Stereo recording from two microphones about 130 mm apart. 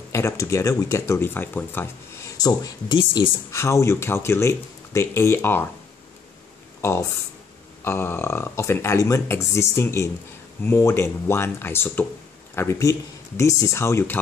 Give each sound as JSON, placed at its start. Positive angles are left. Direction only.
{"t": 0.1, "sound": "speech", "side_deg": 20}
{"t": 6.8, "sound": "speech", "side_deg": 20}